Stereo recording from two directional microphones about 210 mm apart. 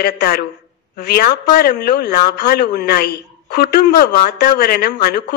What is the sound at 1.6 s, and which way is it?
A woman's voice, 50° left (ahead or behind).